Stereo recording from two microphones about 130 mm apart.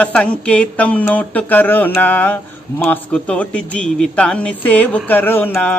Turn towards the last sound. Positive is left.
turn(degrees=15)  # may be behind; listen again after turning